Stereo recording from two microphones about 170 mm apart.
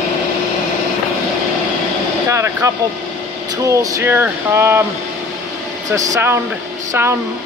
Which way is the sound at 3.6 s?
15° right (ahead or behind).